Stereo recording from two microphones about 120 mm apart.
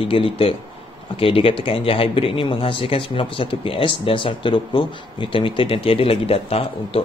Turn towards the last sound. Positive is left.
turn(degrees=55)  # may be behind; listen again after turning